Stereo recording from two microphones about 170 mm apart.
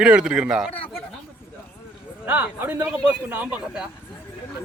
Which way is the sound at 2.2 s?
10° right (ahead or behind).